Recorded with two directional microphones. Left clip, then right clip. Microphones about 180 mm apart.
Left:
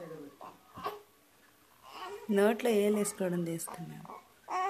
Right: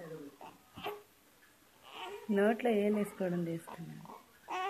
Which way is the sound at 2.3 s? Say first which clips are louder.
Left 3 dB; 20° left (ahead or behind).